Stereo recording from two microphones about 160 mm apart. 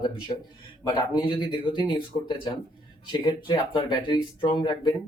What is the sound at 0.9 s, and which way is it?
Speech, 30° left (ahead or behind).